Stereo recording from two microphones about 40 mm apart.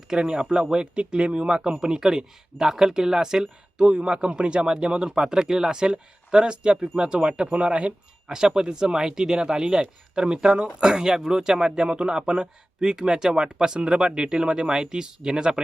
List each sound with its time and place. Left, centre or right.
0.1 s speech: centre
3.8 s speech: right
8.3 s speech: centre